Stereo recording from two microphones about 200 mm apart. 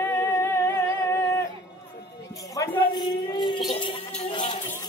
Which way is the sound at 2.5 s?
20° left (ahead or behind).